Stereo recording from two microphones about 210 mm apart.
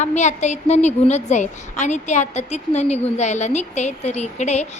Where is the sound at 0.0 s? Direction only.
35° left (ahead or behind).